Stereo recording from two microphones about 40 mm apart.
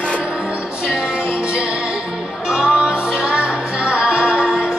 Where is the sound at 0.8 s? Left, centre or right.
Right.